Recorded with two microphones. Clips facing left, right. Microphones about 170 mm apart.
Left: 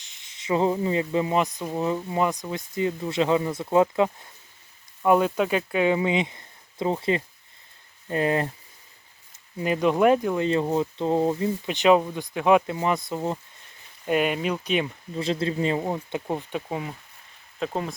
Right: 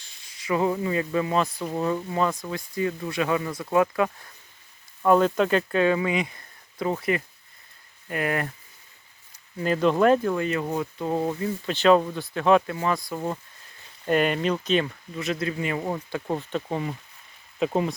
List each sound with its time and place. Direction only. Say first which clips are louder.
0.0 s speech: even; 20° left (ahead or behind)
9.6 s speech: even; 15° left (ahead or behind)
10.4 s speech: left 4 dB; 25° left (ahead or behind)
14.1 s speech: right 1 dB; 5° left (ahead or behind)
15.1 s speech: left 3 dB; 30° left (ahead or behind)
15.8 s speech: left 1 dB; 20° left (ahead or behind)
17.6 s speech: right 4 dB; 5° right (ahead or behind)